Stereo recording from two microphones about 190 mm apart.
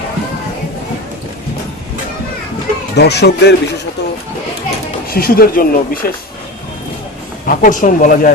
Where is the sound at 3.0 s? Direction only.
60° left (ahead or behind).